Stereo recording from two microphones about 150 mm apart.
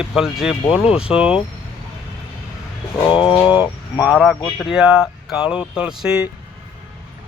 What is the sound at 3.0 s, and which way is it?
Bird, 35° left (ahead or behind).